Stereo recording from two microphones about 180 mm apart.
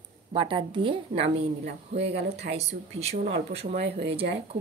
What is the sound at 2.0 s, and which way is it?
Speech, 75° right (ahead or behind).